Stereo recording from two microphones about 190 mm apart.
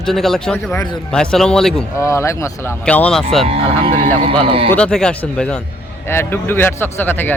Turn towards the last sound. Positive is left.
turn(degrees=10)  # may be behind; listen again after turning